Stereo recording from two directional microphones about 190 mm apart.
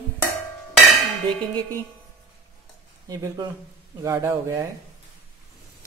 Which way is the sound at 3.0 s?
15° right (ahead or behind).